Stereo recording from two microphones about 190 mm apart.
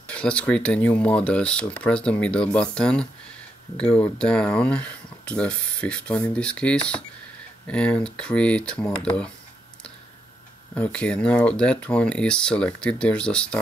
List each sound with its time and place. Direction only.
0.1 s speech: 5° left (ahead or behind)
10.7 s speech: 5° left (ahead or behind)